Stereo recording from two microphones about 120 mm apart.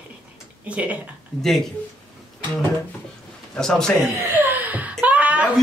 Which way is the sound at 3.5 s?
5° left (ahead or behind).